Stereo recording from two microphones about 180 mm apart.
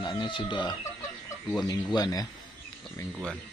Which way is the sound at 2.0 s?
20° left (ahead or behind).